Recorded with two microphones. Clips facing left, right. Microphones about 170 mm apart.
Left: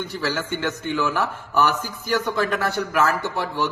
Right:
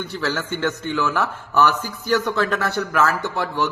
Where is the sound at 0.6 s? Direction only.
15° left (ahead or behind).